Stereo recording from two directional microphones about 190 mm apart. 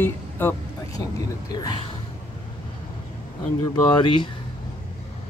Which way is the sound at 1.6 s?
20° left (ahead or behind).